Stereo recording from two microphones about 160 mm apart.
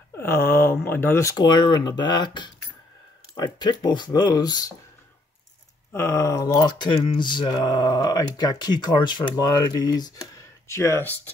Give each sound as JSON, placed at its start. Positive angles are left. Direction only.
{"t": 0.2, "sound": "speech", "side_deg": 15}
{"t": 0.8, "sound": "mantra", "side_deg": 15}
{"t": 5.9, "sound": "mantra", "side_deg": 20}